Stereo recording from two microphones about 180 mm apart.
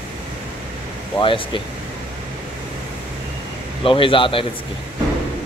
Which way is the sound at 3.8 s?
30° left (ahead or behind).